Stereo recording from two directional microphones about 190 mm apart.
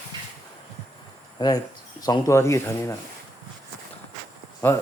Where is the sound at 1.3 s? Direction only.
20° left (ahead or behind).